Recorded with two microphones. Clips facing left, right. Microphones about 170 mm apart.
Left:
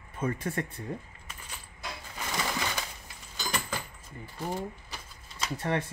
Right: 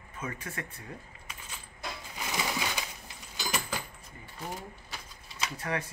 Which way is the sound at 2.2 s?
5° right (ahead or behind).